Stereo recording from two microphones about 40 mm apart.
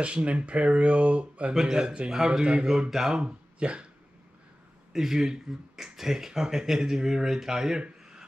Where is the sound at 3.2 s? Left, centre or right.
Right.